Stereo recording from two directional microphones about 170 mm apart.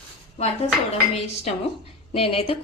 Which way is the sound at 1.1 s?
40° left (ahead or behind).